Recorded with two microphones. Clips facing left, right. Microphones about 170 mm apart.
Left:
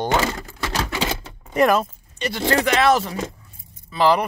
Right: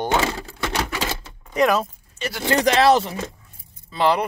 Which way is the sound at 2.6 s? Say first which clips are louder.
Right 3 dB; 35° right (ahead or behind).